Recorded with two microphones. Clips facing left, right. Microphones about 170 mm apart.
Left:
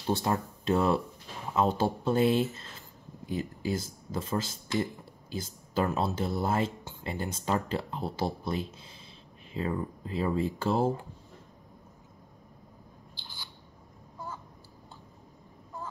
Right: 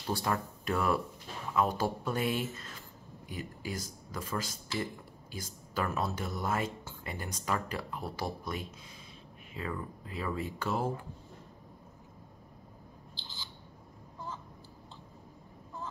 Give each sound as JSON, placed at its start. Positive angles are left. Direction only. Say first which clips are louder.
{"t": 0.0, "sound": "speech", "louder": "left 4 dB", "side_deg": 25}